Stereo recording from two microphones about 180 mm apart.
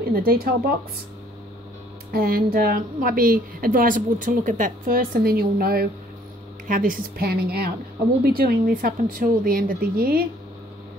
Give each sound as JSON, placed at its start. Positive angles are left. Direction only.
{"t": 0.1, "sound": "speech", "side_deg": -55}
{"t": 2.2, "sound": "a woman's voice", "side_deg": -55}